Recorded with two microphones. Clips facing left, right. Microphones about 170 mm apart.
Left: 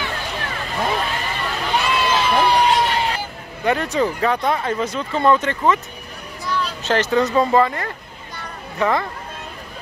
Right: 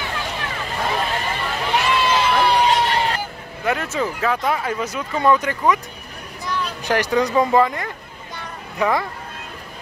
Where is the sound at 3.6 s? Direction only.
Centre (ahead or behind).